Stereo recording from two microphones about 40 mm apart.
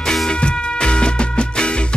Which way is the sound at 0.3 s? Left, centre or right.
Left.